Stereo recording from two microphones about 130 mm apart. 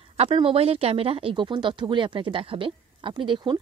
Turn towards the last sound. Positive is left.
turn(degrees=-40)  # may be behind; listen again after turning